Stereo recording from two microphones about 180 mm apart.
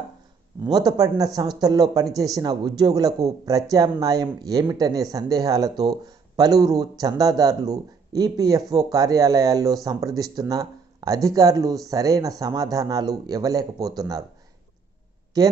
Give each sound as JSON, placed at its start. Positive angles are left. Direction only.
{"t": 0.7, "sound": "speech", "side_deg": -20}
{"t": 15.3, "sound": "speech", "side_deg": -20}